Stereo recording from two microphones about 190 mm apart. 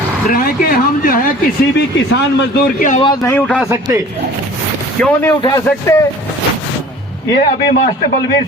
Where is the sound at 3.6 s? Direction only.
15° right (ahead or behind).